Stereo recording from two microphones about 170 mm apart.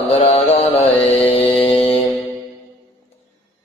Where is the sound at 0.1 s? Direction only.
40° left (ahead or behind).